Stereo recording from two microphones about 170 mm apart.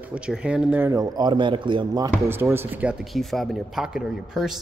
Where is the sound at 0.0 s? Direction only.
5° right (ahead or behind); by 2.0 s 30° right (ahead or behind).